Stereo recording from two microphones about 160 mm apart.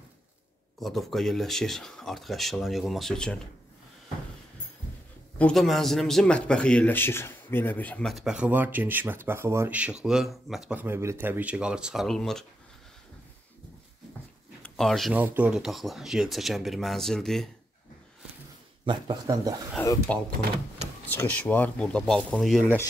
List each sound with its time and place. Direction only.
0.7 s a man's voice: centre (ahead or behind)
5.4 s a man's voice: centre (ahead or behind)
14.6 s speech: centre (ahead or behind)
15.1 s a man's voice: 10° right (ahead or behind)
18.9 s speech: 25° right (ahead or behind)
20.1 s speech: 10° left (ahead or behind)